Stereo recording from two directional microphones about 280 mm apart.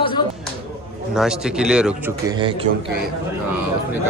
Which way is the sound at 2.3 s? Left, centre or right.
Centre.